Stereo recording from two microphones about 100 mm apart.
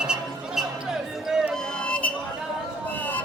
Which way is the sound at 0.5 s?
5° right (ahead or behind).